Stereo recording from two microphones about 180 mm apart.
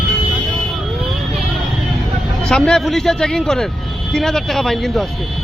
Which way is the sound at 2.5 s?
5° left (ahead or behind).